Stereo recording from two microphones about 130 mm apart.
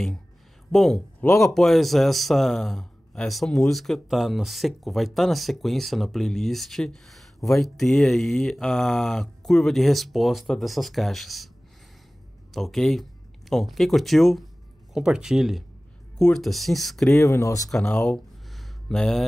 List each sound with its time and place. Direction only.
0.7 s speech: 5° left (ahead or behind)
12.5 s speech: centre (ahead or behind)
17.1 s speech: 20° left (ahead or behind)
17.6 s a sound: 5° left (ahead or behind)